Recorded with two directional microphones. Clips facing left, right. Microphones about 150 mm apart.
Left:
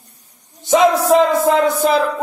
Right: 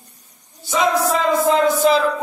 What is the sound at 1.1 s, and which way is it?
Music, 55° left (ahead or behind).